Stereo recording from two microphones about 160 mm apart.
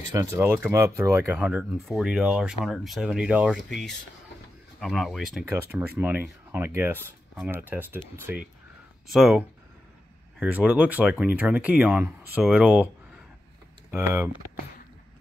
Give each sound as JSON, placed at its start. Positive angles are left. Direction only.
{"t": 0.1, "sound": "speech", "side_deg": -15}
{"t": 5.4, "sound": "speech", "side_deg": -15}
{"t": 9.0, "sound": "speech", "side_deg": 0}
{"t": 10.4, "sound": "speech", "side_deg": -10}
{"t": 13.9, "sound": "speech", "side_deg": -15}